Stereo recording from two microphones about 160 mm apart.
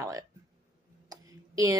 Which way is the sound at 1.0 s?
20° right (ahead or behind).